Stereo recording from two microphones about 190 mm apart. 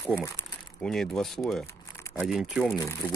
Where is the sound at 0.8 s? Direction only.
5° left (ahead or behind).